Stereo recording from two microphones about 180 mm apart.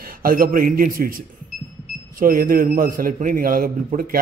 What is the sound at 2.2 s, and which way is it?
A man's voice, 50° right (ahead or behind).